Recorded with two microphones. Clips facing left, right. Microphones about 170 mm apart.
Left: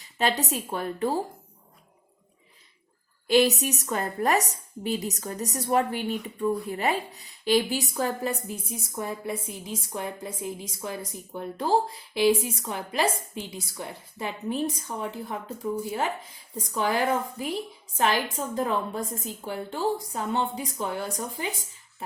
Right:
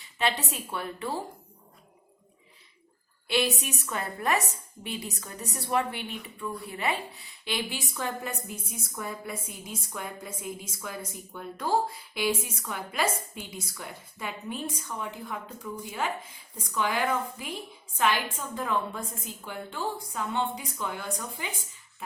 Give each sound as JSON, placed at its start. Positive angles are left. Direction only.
{"t": 0.0, "sound": "a woman's voice", "side_deg": 40}
{"t": 3.2, "sound": "a woman's voice", "side_deg": 40}